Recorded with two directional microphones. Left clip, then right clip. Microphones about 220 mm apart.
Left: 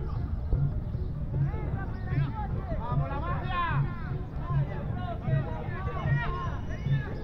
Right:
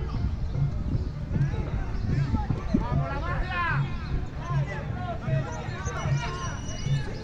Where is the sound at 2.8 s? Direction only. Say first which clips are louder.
Right 2 dB; 40° right (ahead or behind).